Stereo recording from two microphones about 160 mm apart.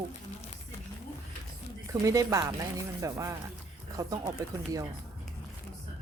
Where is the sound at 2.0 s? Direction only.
20° right (ahead or behind).